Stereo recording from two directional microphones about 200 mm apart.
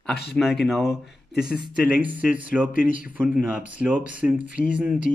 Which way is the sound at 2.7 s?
45° left (ahead or behind).